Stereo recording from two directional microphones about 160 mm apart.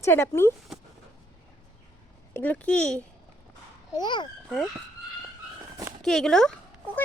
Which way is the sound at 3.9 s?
30° left (ahead or behind).